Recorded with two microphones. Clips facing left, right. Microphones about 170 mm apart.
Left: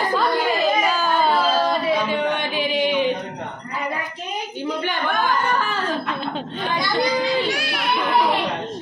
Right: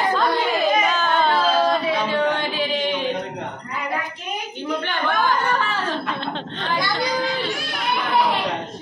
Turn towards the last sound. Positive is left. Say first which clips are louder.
# left 2 dB
turn(degrees=75)  # may be behind; listen again after turning